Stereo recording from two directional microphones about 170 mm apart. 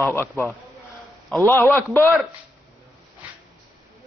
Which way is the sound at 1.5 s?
10° left (ahead or behind).